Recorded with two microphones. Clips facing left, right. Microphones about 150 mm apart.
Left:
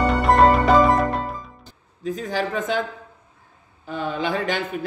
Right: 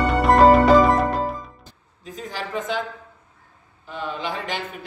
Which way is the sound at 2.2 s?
45° left (ahead or behind).